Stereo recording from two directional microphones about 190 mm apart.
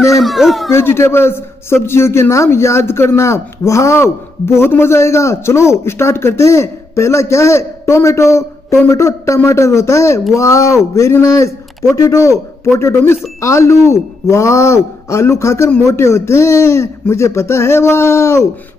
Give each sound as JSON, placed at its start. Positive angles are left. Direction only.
{"t": 0.2, "sound": "speech", "side_deg": 0}
{"t": 0.7, "sound": "a man's voice", "side_deg": 15}